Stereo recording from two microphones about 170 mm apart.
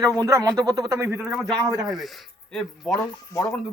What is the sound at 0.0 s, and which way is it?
Speech, 20° right (ahead or behind).